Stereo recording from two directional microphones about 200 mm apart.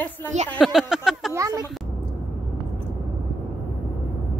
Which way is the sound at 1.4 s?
20° right (ahead or behind).